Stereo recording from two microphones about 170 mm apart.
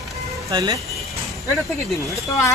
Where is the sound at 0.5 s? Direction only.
25° right (ahead or behind).